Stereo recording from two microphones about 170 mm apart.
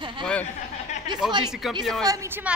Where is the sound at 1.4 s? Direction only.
Centre (ahead or behind).